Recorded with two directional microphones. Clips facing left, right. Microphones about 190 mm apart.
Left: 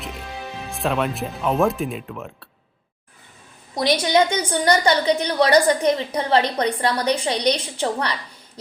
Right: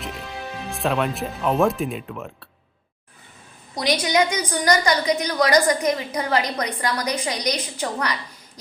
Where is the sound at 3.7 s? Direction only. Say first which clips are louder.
Left 3 dB; 25° left (ahead or behind).